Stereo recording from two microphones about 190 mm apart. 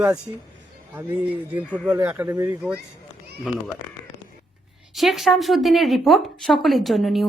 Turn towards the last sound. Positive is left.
turn(degrees=0)  # may be behind; listen again after turning